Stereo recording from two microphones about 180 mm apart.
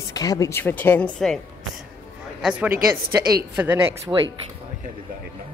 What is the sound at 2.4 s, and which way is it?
A woman's voice, 5° right (ahead or behind).